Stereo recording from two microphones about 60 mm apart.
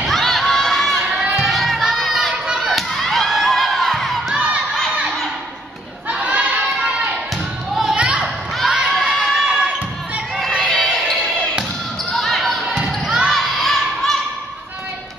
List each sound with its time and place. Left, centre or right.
0.0 s crowd: centre
2.4 s a sound: centre
6.2 s crowd: right
7.9 s children playing: centre
8.6 s crowd: centre
10.6 s music: centre
12.1 s basketball bounce: centre